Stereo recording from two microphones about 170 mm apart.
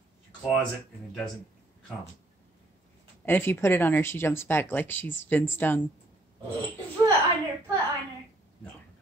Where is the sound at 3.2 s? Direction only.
15° left (ahead or behind).